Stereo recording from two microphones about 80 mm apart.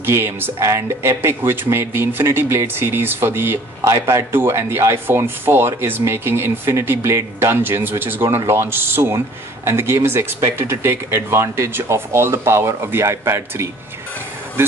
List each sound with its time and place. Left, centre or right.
0.0 s speech: right